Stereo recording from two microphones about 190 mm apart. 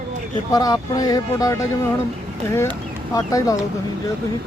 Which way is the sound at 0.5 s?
20° left (ahead or behind).